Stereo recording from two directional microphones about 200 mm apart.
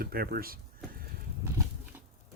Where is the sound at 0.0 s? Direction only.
50° right (ahead or behind).